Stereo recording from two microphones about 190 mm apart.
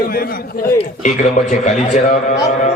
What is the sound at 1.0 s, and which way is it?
A man's voice, 40° left (ahead or behind).